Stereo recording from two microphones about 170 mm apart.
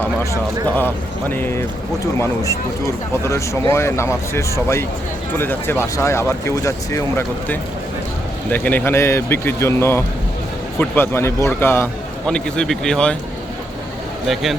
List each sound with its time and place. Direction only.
0.8 s a man's voice: 10° left (ahead or behind)